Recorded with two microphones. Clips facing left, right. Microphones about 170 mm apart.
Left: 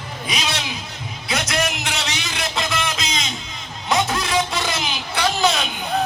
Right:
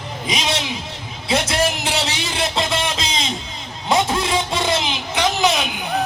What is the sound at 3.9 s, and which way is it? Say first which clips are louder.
Vehicle: right 3 dB; 25° right (ahead or behind).